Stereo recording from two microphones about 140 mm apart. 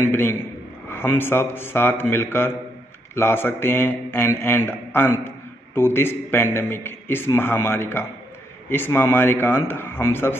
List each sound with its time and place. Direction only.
0.1 s a man's voice: 15° left (ahead or behind)